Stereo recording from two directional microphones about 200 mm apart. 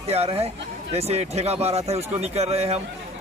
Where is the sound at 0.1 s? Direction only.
30° right (ahead or behind).